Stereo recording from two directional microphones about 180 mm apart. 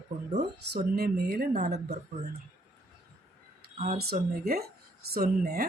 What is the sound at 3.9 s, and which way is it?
Speech, 60° right (ahead or behind).